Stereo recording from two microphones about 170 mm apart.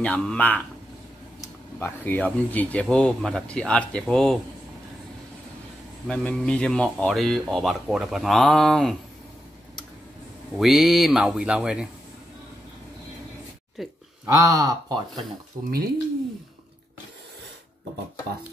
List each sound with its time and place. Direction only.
0.0 s speech: 5° left (ahead or behind)
6.0 s speech: 5° left (ahead or behind)
10.6 s speech: centre (ahead or behind)
13.8 s speech: centre (ahead or behind)
14.2 s speech: 20° right (ahead or behind)